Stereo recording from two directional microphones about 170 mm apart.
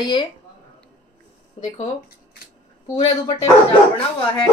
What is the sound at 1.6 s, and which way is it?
Speech, 35° left (ahead or behind).